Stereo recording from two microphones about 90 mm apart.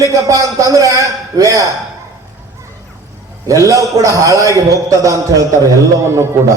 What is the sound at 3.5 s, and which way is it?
Speech, 35° right (ahead or behind).